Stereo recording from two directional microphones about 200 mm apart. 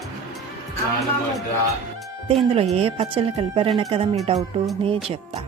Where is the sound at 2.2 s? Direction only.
30° right (ahead or behind).